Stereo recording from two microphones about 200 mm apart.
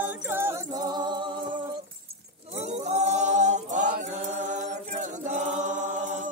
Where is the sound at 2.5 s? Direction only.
35° right (ahead or behind).